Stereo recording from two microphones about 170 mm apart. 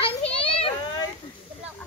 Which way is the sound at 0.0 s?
35° left (ahead or behind).